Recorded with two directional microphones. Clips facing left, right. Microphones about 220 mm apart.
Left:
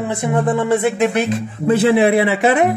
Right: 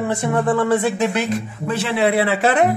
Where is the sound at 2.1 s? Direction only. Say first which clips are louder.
Left 3 dB; 20° left (ahead or behind).